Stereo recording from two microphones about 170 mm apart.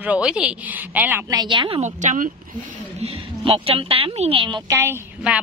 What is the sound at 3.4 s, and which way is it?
A woman's voice, 35° right (ahead or behind).